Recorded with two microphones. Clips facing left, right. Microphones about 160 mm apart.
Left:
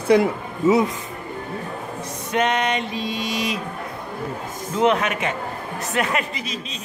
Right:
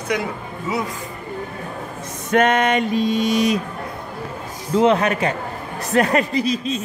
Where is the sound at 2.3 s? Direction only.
50° right (ahead or behind).